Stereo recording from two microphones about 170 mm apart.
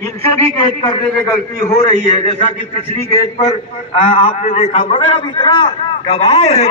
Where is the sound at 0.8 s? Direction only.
30° left (ahead or behind).